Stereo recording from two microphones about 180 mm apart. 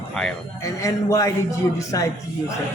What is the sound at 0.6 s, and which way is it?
Speech, 15° left (ahead or behind).